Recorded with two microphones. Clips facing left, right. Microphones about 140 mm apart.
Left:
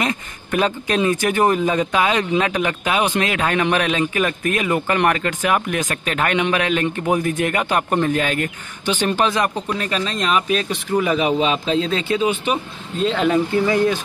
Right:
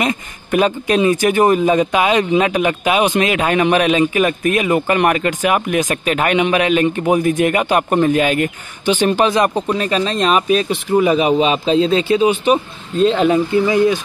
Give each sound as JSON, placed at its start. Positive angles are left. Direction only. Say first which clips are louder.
{"t": 0.0, "sound": "speech", "louder": "right 4 dB", "side_deg": -15}
{"t": 13.1, "sound": "speech", "louder": "right 1 dB", "side_deg": -15}